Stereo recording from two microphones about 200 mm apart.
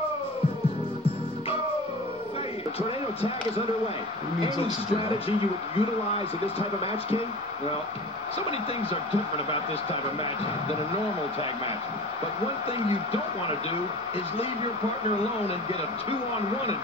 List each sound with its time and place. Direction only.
5.8 s a man's voice: 30° left (ahead or behind)